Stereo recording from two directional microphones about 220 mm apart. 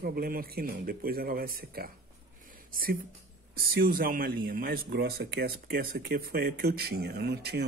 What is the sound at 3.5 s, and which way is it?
Speech, 40° right (ahead or behind).